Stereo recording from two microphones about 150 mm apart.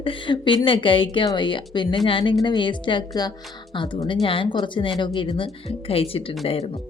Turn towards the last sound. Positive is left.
turn(degrees=40)  # may be behind; listen again after turning